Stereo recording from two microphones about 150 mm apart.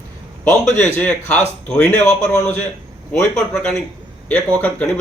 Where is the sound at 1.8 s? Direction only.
50° left (ahead or behind).